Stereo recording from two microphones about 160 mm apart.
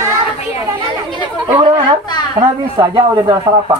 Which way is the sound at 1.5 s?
35° right (ahead or behind).